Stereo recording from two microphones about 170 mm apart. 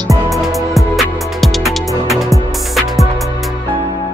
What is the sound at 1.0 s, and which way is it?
Music, centre (ahead or behind).